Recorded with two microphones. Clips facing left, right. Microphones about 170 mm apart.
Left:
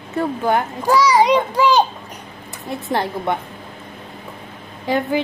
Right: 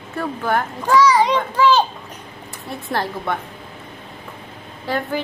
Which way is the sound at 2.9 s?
20° left (ahead or behind).